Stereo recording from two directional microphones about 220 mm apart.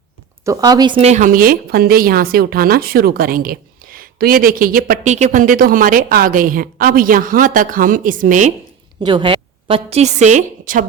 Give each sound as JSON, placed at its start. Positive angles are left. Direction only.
{"t": 0.4, "sound": "speech", "side_deg": -15}
{"t": 9.0, "sound": "a woman's voice", "side_deg": -20}